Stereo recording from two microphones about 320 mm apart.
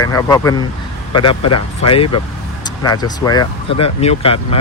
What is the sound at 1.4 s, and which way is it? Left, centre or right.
Speech, left.